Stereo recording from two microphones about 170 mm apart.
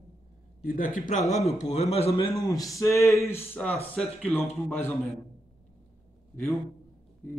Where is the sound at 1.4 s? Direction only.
40° left (ahead or behind).